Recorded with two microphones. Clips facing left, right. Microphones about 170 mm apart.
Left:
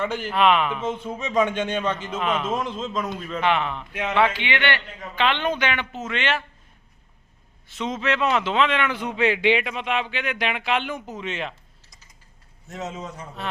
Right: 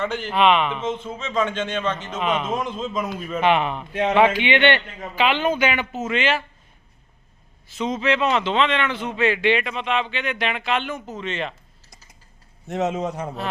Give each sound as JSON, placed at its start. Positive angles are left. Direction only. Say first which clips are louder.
{"t": 0.0, "sound": "a man's voice", "louder": "right 1 dB", "side_deg": 10}
{"t": 2.1, "sound": "a man's voice", "louder": "right 2 dB", "side_deg": -5}
{"t": 3.2, "sound": "a man's voice", "louder": "right 4 dB", "side_deg": -10}
{"t": 5.1, "sound": "speech", "louder": "right 3 dB", "side_deg": -5}
{"t": 7.7, "sound": "a man's voice", "louder": "right 3 dB", "side_deg": 0}
{"t": 12.6, "sound": "a man's voice", "louder": "right 9 dB", "side_deg": -70}